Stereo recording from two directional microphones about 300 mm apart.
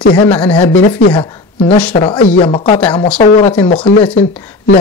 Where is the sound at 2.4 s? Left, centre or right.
Centre.